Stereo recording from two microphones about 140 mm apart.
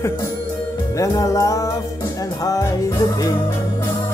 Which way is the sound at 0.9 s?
25° left (ahead or behind).